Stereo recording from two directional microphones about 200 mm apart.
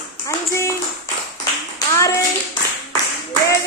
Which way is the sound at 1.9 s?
15° left (ahead or behind).